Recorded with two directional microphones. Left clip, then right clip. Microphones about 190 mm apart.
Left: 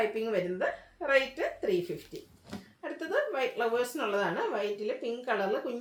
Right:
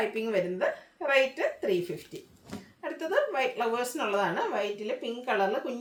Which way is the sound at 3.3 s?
10° right (ahead or behind).